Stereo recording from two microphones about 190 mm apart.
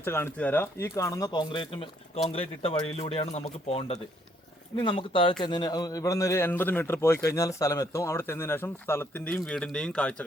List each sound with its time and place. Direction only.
0.0 s a man's voice: 10° left (ahead or behind)